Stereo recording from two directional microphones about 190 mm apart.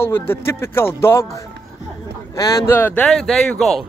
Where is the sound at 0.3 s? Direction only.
15° left (ahead or behind).